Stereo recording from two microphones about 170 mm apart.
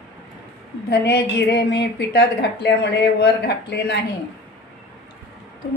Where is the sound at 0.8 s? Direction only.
75° left (ahead or behind).